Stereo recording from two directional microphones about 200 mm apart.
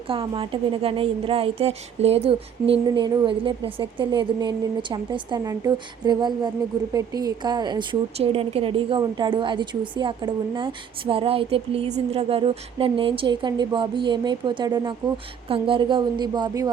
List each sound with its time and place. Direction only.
0.1 s a woman's voice: 25° right (ahead or behind)